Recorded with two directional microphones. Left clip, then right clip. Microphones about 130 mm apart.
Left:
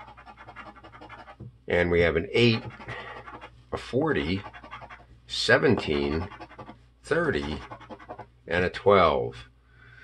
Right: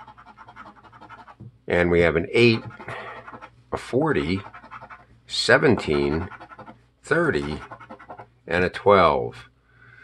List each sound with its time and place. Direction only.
1.7 s speech: 40° right (ahead or behind)